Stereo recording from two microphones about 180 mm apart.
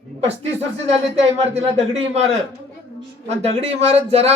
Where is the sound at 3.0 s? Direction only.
35° right (ahead or behind).